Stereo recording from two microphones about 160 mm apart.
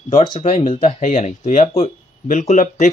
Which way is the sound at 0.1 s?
30° left (ahead or behind).